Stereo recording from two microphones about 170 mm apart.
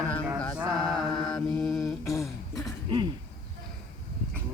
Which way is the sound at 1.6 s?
Centre (ahead or behind).